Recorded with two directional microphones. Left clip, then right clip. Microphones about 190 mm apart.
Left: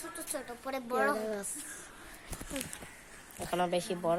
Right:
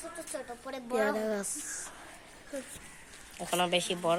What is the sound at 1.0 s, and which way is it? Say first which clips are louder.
Speech: right 2 dB; 35° right (ahead or behind).